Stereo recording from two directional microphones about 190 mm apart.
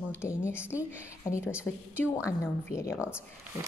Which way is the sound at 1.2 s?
15° left (ahead or behind).